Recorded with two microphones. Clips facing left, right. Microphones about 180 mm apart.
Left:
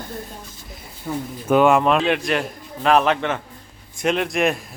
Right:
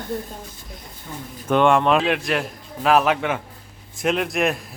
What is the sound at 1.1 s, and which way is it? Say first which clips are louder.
Speech: left 9 dB; 50° left (ahead or behind).